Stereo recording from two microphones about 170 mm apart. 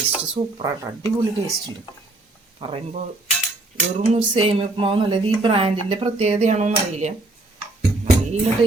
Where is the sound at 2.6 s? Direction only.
35° right (ahead or behind).